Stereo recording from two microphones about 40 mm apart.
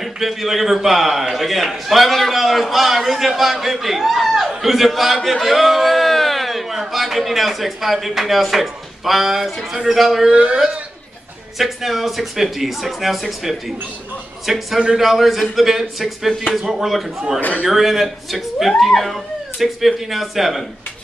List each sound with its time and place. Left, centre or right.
0.0 s a man's voice: centre
10.3 s speech: right
11.5 s a man's voice: centre